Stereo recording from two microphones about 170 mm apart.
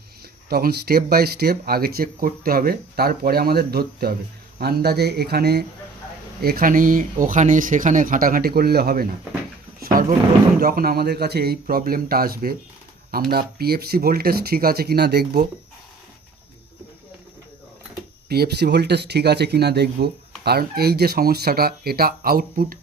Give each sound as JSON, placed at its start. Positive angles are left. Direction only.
{"t": 0.5, "sound": "speech", "side_deg": -65}
{"t": 9.8, "sound": "drawer open or close", "side_deg": -60}
{"t": 10.6, "sound": "speech", "side_deg": -60}
{"t": 11.6, "sound": "speech", "side_deg": -60}
{"t": 18.3, "sound": "speech", "side_deg": -70}